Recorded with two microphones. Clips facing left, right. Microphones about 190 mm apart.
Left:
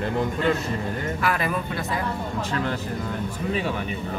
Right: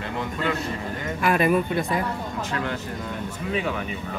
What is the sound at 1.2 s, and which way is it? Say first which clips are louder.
Speech: right 7 dB; 20° right (ahead or behind).